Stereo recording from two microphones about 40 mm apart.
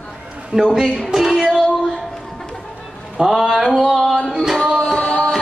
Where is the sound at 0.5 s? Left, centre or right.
Centre.